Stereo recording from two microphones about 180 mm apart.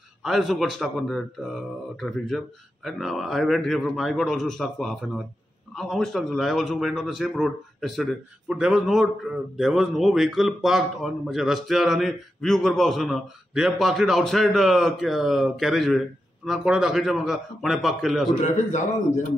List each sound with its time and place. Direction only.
0.2 s a man's voice: centre (ahead or behind)
18.4 s a man's voice: 40° left (ahead or behind)